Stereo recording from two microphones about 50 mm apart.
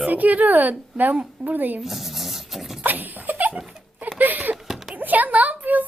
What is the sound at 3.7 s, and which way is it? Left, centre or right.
Dog, centre.